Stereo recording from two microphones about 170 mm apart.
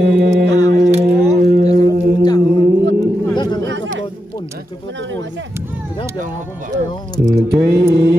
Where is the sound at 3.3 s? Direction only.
25° left (ahead or behind).